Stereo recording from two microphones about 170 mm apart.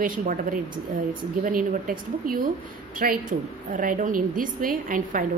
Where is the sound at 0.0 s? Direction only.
55° right (ahead or behind).